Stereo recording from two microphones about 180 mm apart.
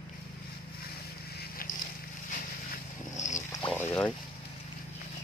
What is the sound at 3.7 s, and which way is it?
Boat, 10° left (ahead or behind).